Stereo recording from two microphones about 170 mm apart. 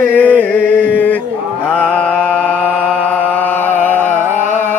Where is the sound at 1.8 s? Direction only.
10° left (ahead or behind).